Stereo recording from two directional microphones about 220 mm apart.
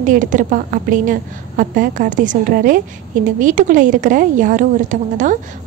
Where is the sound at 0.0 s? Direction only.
35° right (ahead or behind).